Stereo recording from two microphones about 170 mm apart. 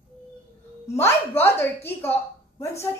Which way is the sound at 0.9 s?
15° left (ahead or behind).